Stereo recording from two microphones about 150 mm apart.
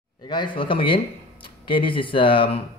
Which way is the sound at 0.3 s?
30° left (ahead or behind).